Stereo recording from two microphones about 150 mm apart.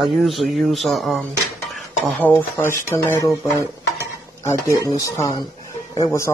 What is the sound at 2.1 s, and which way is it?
Speech, 10° left (ahead or behind).